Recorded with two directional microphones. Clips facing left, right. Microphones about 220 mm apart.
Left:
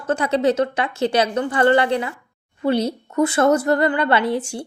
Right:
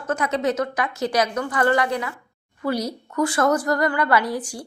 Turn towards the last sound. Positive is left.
turn(degrees=25)  # may be behind; listen again after turning